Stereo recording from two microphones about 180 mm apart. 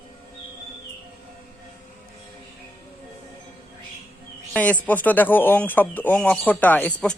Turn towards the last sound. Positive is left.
turn(degrees=5)  # may be behind; listen again after turning